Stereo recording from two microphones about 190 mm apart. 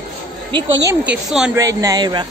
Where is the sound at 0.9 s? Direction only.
5° right (ahead or behind).